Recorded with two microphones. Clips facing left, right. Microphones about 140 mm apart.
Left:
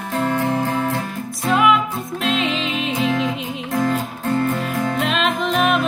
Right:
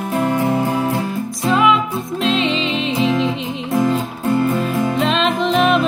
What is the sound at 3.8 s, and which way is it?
Music, 15° right (ahead or behind).